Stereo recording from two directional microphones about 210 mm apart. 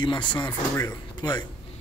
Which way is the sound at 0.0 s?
20° left (ahead or behind).